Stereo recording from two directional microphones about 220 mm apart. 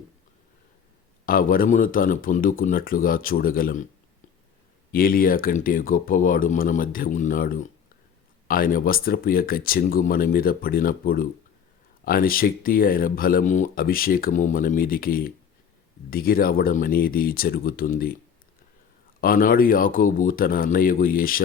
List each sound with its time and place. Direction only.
1.2 s speech: 40° left (ahead or behind)
4.9 s speech: 40° left (ahead or behind)
19.2 s speech: 40° left (ahead or behind)